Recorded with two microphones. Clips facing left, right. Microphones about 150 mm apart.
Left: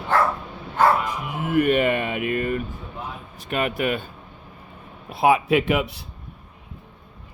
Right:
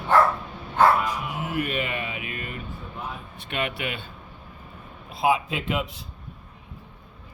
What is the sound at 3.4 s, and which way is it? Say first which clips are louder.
Speech: left 6 dB; 40° left (ahead or behind).